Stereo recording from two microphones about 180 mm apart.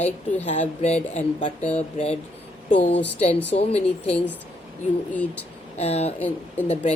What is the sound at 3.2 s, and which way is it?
Speech, 35° left (ahead or behind).